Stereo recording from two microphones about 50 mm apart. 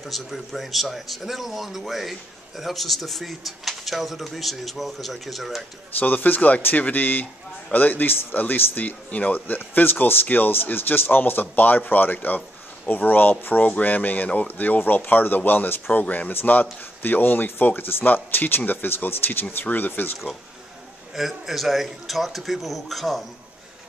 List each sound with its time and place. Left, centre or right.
0.0 s a man's voice: centre
5.9 s speech: left
14.8 s speech: left
21.1 s a man's voice: centre